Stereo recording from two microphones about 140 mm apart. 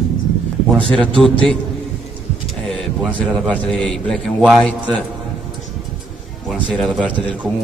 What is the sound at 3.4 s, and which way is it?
Speech, 5° left (ahead or behind).